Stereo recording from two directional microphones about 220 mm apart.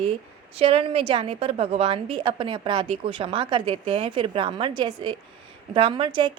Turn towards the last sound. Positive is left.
turn(degrees=-20)  # may be behind; listen again after turning